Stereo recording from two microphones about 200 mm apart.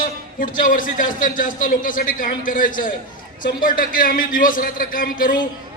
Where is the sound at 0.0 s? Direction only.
45° left (ahead or behind).